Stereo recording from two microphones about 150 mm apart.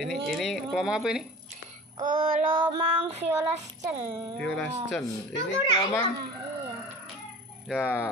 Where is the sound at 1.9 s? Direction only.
60° right (ahead or behind).